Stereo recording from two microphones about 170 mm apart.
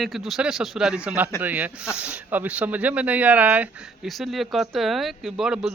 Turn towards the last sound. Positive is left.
turn(degrees=0)  # may be behind; listen again after turning